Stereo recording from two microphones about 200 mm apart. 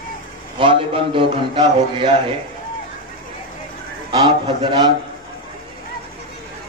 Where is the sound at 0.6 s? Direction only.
25° right (ahead or behind).